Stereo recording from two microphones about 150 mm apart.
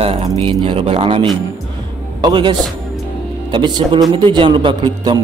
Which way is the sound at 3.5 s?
30° right (ahead or behind).